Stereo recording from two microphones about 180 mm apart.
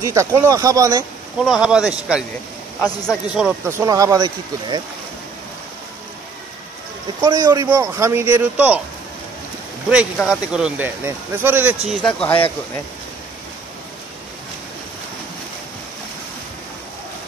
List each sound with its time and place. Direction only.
0.0 s speech: 15° right (ahead or behind)
1.4 s speech: 5° right (ahead or behind)
3.6 s speech: 15° right (ahead or behind)
7.2 s speech: 20° right (ahead or behind)
10.1 s speech: centre (ahead or behind)
11.9 s speech: 5° left (ahead or behind)
12.3 s speech: 30° left (ahead or behind)